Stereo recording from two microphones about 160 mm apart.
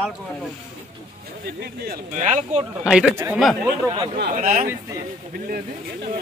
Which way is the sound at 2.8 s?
5° right (ahead or behind).